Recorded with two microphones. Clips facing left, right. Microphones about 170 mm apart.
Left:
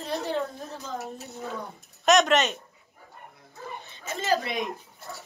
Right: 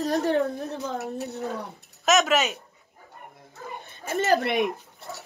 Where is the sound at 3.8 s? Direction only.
50° right (ahead or behind).